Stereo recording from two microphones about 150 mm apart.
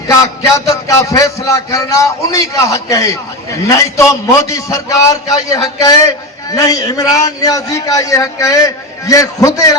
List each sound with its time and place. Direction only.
0.7 s a man's voice: 20° left (ahead or behind)